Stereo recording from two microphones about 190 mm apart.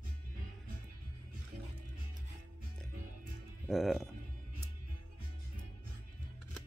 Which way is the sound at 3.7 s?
Centre (ahead or behind).